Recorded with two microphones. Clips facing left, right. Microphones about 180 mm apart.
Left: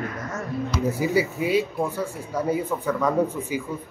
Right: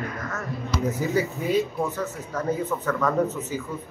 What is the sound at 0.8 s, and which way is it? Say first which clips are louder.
Speech: left 2 dB; 10° left (ahead or behind).